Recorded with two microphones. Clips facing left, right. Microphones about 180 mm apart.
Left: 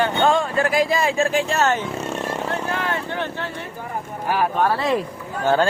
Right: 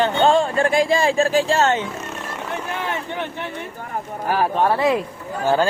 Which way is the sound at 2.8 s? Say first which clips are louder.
Left 1 dB; 15° right (ahead or behind).